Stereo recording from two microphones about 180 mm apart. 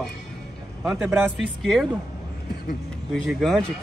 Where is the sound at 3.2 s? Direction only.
Centre (ahead or behind).